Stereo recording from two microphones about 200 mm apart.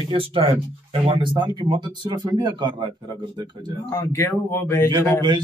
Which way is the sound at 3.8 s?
15° left (ahead or behind).